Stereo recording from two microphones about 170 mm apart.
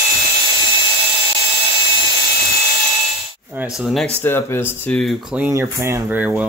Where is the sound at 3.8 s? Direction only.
Centre (ahead or behind).